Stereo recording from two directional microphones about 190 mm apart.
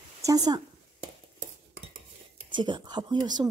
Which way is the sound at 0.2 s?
20° right (ahead or behind).